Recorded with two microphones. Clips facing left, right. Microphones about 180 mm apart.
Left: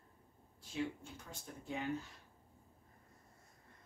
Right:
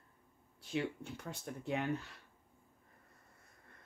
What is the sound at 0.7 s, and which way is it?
A woman's voice, 65° right (ahead or behind).